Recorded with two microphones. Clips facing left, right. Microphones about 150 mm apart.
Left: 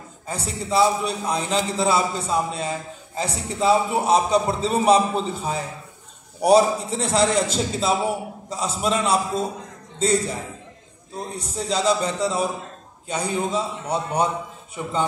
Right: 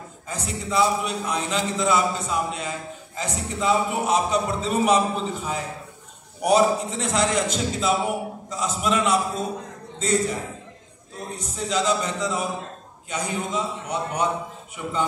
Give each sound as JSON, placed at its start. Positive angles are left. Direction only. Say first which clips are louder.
{"t": 0.3, "sound": "a man's voice", "louder": "left 3 dB", "side_deg": 35}
{"t": 11.3, "sound": "a man's voice", "louder": "even", "side_deg": 30}